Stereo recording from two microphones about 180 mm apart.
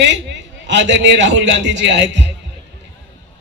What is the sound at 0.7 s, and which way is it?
A man's voice, 75° right (ahead or behind).